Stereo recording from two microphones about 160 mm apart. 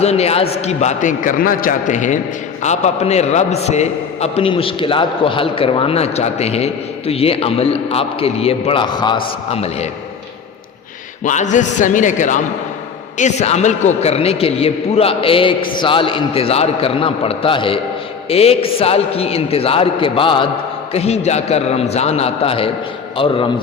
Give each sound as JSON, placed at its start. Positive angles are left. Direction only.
{"t": 0.0, "sound": "a man's voice", "side_deg": 40}
{"t": 11.2, "sound": "a man's voice", "side_deg": 50}